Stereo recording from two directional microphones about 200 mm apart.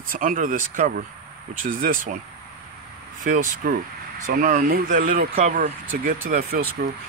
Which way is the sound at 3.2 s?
40° right (ahead or behind).